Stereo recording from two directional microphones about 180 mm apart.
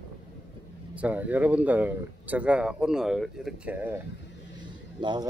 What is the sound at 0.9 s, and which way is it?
Speech, 10° right (ahead or behind).